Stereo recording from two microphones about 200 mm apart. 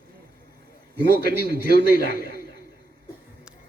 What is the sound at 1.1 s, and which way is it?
A man's voice, 50° right (ahead or behind).